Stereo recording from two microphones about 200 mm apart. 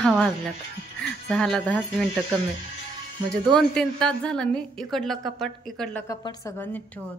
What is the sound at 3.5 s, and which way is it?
A woman's voice, 5° left (ahead or behind).